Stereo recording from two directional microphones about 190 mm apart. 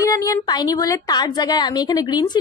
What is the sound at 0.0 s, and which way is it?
A woman's voice, 15° left (ahead or behind).